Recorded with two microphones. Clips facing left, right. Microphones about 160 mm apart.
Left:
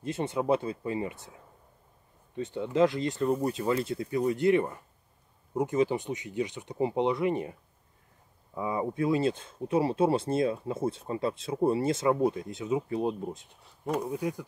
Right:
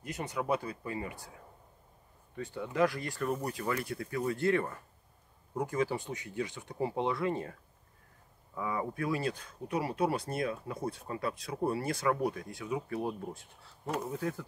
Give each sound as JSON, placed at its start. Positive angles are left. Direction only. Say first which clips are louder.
{"t": 0.0, "sound": "speech", "louder": "left 6 dB", "side_deg": 25}
{"t": 2.3, "sound": "speech", "louder": "left 5 dB", "side_deg": 20}
{"t": 8.5, "sound": "speech", "louder": "left 5 dB", "side_deg": 20}
{"t": 13.8, "sound": "speech", "louder": "left 5 dB", "side_deg": 0}
{"t": 14.1, "sound": "speech", "louder": "left 4 dB", "side_deg": 15}